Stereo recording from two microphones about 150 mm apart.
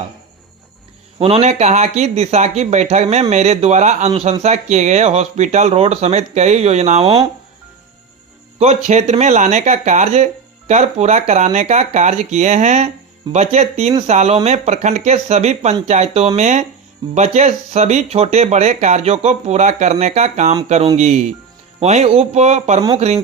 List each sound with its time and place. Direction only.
1.2 s speech: 40° right (ahead or behind)
8.5 s speech: 45° right (ahead or behind)